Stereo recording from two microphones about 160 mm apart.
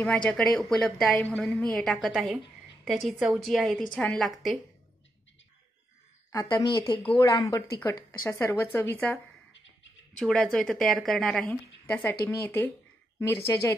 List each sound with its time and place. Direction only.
0.0 s a woman's voice: 5° left (ahead or behind)
6.5 s a woman's voice: 25° left (ahead or behind)